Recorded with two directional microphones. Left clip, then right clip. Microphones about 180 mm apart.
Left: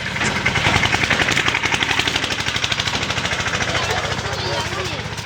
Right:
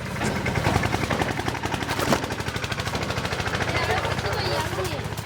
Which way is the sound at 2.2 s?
60° right (ahead or behind).